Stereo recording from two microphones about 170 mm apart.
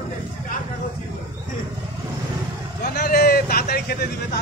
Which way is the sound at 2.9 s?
65° left (ahead or behind).